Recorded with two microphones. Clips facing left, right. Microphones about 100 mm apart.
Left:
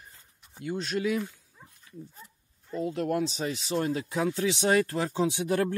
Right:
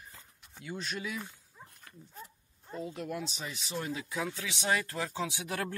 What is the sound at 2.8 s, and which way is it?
Speech, 60° left (ahead or behind).